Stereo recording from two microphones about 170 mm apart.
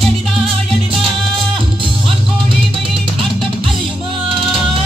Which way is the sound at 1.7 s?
30° right (ahead or behind).